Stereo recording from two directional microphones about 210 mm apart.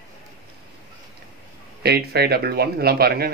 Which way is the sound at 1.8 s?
50° right (ahead or behind).